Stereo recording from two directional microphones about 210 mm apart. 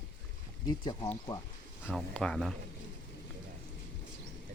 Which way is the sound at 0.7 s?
20° left (ahead or behind).